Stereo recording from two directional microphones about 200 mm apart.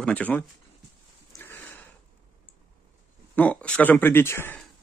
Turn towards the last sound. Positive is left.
turn(degrees=10)  # may be behind; listen again after turning